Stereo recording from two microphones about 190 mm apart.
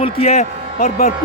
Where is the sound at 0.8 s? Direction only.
50° left (ahead or behind).